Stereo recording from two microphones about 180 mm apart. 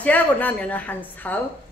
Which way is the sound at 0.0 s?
10° left (ahead or behind).